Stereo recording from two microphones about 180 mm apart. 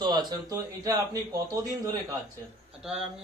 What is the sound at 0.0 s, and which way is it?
Speech, 25° right (ahead or behind).